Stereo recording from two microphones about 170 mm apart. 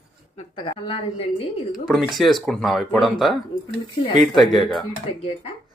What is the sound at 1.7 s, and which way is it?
Speech, centre (ahead or behind).